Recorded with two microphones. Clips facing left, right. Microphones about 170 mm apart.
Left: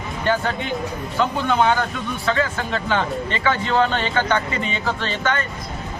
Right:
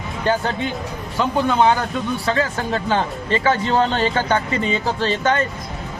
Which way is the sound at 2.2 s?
35° right (ahead or behind).